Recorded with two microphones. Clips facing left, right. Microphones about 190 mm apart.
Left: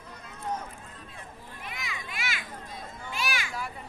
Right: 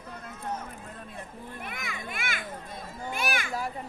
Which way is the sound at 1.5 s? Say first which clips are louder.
Right 1 dB; 55° right (ahead or behind).